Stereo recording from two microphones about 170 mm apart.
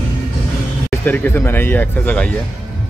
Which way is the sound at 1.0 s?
10° left (ahead or behind).